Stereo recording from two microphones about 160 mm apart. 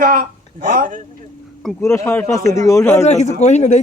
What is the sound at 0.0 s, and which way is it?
Speech, 60° right (ahead or behind).